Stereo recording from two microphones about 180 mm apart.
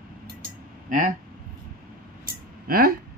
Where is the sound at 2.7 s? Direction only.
55° right (ahead or behind).